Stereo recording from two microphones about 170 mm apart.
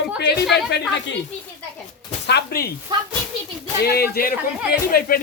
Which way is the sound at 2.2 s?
70° left (ahead or behind).